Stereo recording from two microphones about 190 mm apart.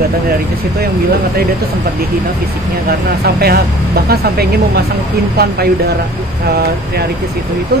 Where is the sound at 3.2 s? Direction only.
55° right (ahead or behind).